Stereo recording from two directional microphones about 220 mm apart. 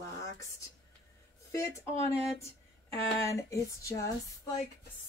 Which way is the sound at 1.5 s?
15° left (ahead or behind).